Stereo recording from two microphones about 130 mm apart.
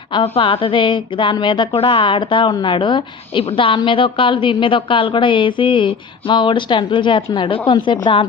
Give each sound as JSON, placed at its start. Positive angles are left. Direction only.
{"t": 0.1, "sound": "a woman's voice", "side_deg": 40}